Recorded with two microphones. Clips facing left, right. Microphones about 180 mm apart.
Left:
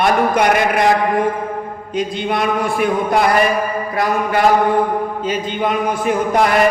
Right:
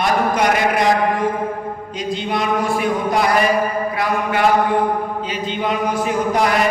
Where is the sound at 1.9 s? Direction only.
55° left (ahead or behind).